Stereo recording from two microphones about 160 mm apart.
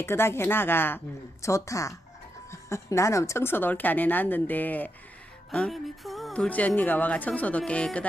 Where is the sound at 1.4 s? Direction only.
20° left (ahead or behind).